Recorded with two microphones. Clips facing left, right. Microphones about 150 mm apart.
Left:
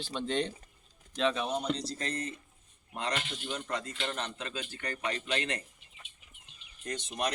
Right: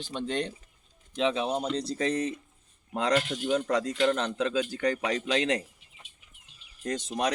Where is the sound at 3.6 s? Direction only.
90° right.